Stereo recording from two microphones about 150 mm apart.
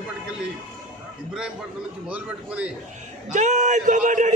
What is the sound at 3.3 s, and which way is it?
Speech, 55° right (ahead or behind).